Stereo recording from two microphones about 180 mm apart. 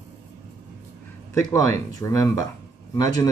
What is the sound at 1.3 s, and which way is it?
Speech, 15° left (ahead or behind).